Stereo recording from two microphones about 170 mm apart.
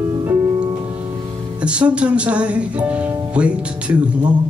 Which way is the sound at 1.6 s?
5° right (ahead or behind).